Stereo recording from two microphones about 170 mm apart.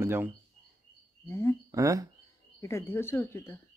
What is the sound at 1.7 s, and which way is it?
Speech, 20° right (ahead or behind).